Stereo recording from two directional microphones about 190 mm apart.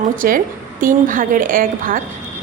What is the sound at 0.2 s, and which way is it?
A woman's voice, 45° right (ahead or behind).